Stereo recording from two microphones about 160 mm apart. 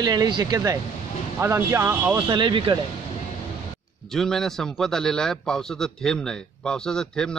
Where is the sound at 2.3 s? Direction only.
30° right (ahead or behind).